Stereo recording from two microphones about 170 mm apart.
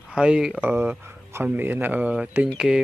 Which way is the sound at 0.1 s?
5° right (ahead or behind).